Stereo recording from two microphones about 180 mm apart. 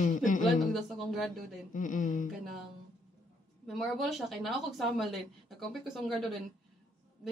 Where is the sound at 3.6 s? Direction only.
Centre (ahead or behind).